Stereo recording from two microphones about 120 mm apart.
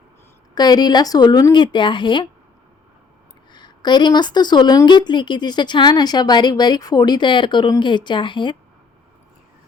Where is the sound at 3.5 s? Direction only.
40° left (ahead or behind).